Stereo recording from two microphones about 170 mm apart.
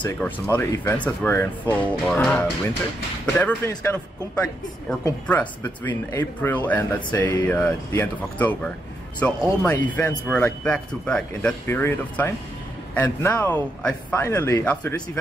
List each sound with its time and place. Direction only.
0.0 s speech: 10° left (ahead or behind)